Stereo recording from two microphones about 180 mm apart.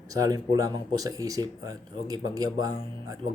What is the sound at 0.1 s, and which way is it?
Speech, 20° right (ahead or behind).